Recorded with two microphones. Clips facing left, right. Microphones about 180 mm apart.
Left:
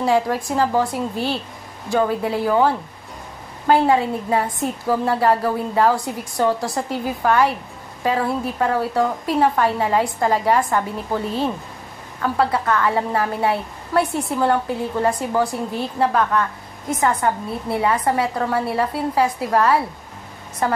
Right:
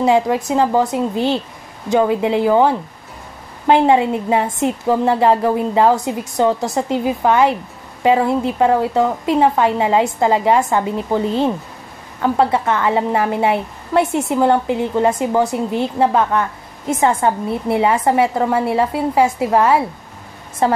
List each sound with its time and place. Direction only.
0.0 s a woman's voice: 20° right (ahead or behind)